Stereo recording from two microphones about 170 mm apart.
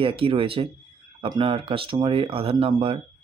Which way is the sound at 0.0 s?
30° right (ahead or behind).